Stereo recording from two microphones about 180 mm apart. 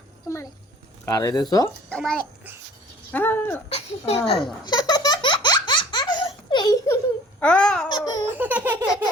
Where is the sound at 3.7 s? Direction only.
35° left (ahead or behind).